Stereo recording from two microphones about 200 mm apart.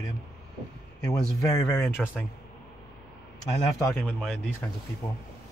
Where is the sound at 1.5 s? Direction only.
20° left (ahead or behind).